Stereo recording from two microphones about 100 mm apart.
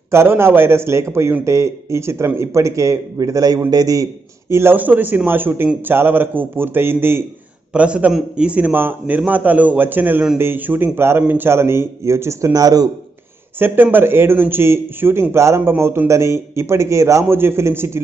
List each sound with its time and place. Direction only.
0.1 s a man's voice: 25° right (ahead or behind)
7.7 s a man's voice: 10° right (ahead or behind); by 12.9 s 40° right (ahead or behind)
13.6 s a man's voice: 20° right (ahead or behind)